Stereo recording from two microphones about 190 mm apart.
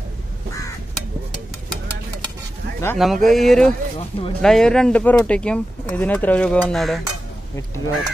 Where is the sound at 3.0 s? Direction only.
Centre (ahead or behind).